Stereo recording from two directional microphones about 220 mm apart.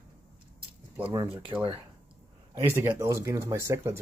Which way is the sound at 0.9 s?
10° right (ahead or behind).